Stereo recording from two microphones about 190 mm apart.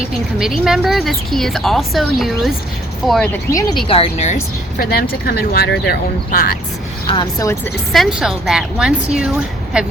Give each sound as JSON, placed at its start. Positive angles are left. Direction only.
{"t": 0.1, "sound": "a woman's voice", "side_deg": -5}
{"t": 3.5, "sound": "speech", "side_deg": 20}
{"t": 4.8, "sound": "speech", "side_deg": 55}
{"t": 7.1, "sound": "speech", "side_deg": 20}
{"t": 7.9, "sound": "a woman's voice", "side_deg": 0}